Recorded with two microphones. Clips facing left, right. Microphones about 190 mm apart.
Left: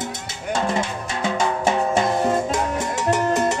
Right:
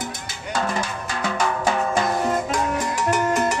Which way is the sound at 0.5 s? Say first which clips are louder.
Left 2 dB; 25° left (ahead or behind).